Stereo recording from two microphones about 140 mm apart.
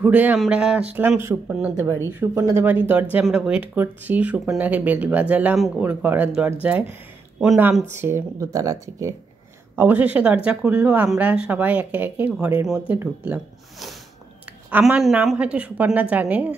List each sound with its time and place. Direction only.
0.0 s speech: 10° right (ahead or behind)
9.8 s speech: 10° right (ahead or behind)